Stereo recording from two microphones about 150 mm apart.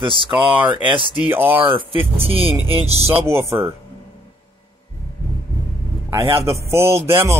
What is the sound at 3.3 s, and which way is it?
Speech, 15° right (ahead or behind).